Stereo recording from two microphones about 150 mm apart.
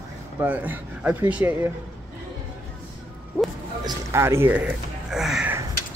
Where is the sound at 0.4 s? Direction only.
10° right (ahead or behind).